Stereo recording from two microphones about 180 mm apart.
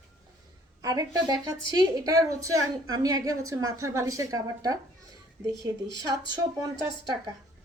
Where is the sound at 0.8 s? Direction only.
20° right (ahead or behind).